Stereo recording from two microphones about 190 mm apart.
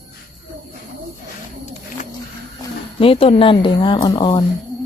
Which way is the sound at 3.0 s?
30° left (ahead or behind).